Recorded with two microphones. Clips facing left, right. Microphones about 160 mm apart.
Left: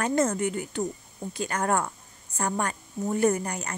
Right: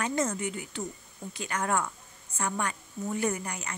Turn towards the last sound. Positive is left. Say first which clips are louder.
# left 6 dB
turn(degrees=40)  # may be behind; listen again after turning